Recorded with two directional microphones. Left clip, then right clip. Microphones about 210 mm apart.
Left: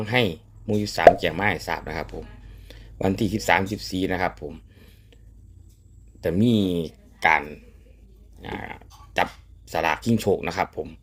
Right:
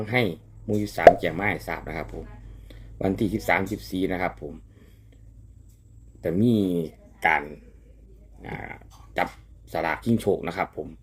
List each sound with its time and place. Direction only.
0.0 s speech: 10° left (ahead or behind)
6.1 s speech: 15° left (ahead or behind)